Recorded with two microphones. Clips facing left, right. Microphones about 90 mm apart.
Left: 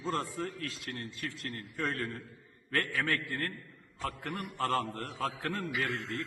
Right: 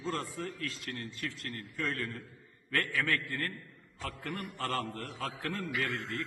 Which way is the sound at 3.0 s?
20° left (ahead or behind).